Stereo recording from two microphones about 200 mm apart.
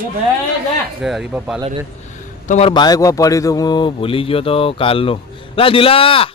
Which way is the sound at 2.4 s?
35° left (ahead or behind).